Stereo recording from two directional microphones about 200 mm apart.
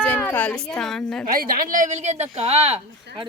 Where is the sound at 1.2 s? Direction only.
45° right (ahead or behind).